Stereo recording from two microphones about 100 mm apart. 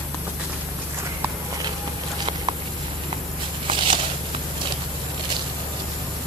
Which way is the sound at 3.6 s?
60° right (ahead or behind).